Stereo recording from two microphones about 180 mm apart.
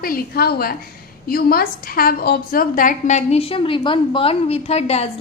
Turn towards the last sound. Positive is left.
turn(degrees=35)  # may be behind; listen again after turning